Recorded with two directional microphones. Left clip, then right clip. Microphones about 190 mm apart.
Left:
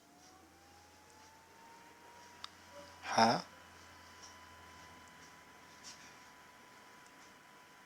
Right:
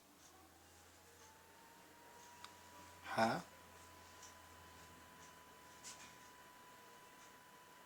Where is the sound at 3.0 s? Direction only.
40° left (ahead or behind).